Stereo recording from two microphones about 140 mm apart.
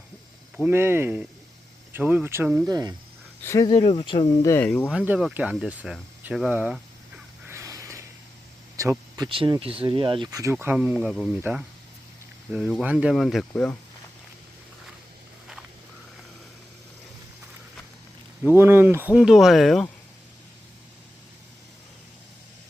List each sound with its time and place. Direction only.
0.5 s speech: 15° right (ahead or behind)
3.4 s speech: 25° left (ahead or behind)
4.4 s speech: 15° left (ahead or behind)
4.9 s speech: 10° right (ahead or behind)
7.4 s a sound: 20° right (ahead or behind)
8.7 s speech: 25° right (ahead or behind)
10.4 s speech: 15° right (ahead or behind)
12.5 s speech: centre (ahead or behind)
18.5 s speech: 15° right (ahead or behind); by 19.8 s centre (ahead or behind)